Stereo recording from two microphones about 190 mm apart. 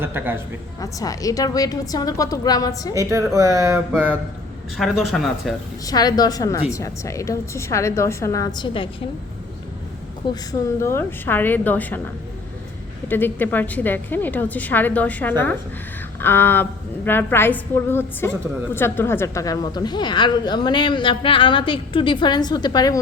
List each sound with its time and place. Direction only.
0.0 s speech: 10° right (ahead or behind)
0.8 s a woman's voice: 20° left (ahead or behind)
2.9 s speech: 15° right (ahead or behind)
4.8 s speech: centre (ahead or behind)
5.8 s a woman's voice: 20° left (ahead or behind)
10.2 s a woman's voice: 25° left (ahead or behind)
10.8 s a woman's voice: 15° left (ahead or behind)
13.1 s a woman's voice: 10° left (ahead or behind)